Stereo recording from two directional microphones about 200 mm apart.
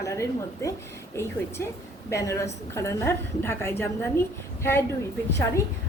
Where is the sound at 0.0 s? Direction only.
15° left (ahead or behind).